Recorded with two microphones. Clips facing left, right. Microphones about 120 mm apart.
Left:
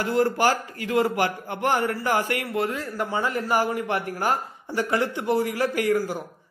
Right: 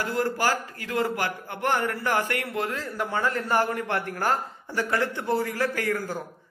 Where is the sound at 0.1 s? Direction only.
20° left (ahead or behind).